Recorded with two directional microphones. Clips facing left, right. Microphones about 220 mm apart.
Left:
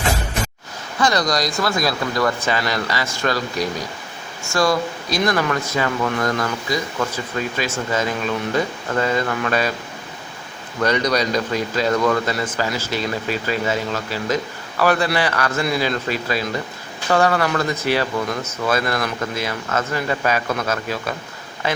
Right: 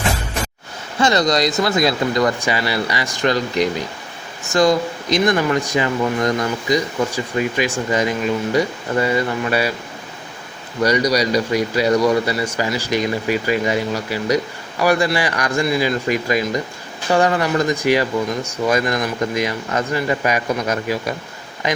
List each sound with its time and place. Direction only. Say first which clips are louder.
0.9 s speech: right 3 dB; 25° right (ahead or behind)
10.8 s speech: right 2 dB; 10° right (ahead or behind)